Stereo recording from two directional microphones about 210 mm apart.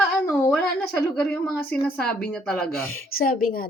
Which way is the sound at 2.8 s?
75° left (ahead or behind).